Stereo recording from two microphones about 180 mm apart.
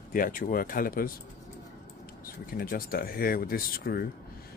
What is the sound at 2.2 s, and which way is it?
Speech, 55° left (ahead or behind).